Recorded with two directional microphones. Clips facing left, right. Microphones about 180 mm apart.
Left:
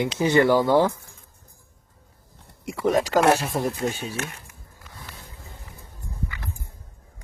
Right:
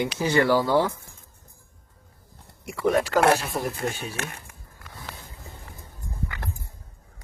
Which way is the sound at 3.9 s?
15° left (ahead or behind).